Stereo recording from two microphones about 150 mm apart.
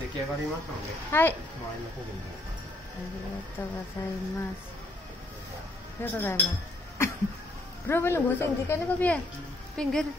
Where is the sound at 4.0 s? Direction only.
20° left (ahead or behind).